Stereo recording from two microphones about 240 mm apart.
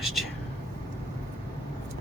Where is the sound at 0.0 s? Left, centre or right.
Centre.